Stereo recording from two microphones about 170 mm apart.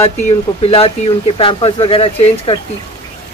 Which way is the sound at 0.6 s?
35° left (ahead or behind).